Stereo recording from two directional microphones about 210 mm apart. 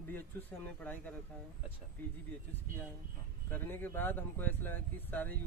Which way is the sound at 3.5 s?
10° left (ahead or behind).